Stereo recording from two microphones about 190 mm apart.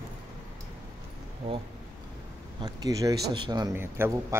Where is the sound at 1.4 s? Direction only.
30° right (ahead or behind).